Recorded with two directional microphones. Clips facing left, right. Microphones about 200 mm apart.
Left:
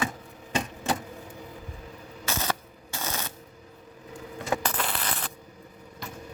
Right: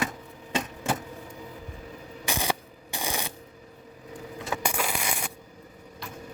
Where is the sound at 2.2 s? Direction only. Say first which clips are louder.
Right 1 dB; 15° right (ahead or behind).